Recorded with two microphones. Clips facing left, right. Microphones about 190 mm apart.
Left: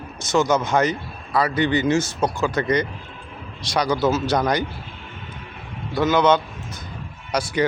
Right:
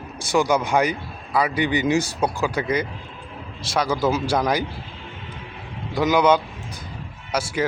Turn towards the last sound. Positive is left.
turn(degrees=-5)  # may be behind; listen again after turning